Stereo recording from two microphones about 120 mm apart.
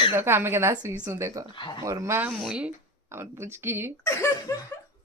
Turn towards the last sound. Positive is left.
turn(degrees=25)  # may be behind; listen again after turning